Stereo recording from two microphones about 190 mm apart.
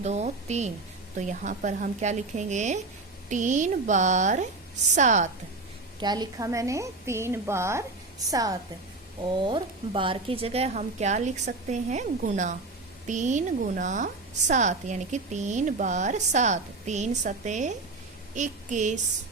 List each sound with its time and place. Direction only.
0.0 s a woman's voice: 35° right (ahead or behind)
6.0 s a woman's voice: 20° right (ahead or behind); by 18.9 s 40° right (ahead or behind)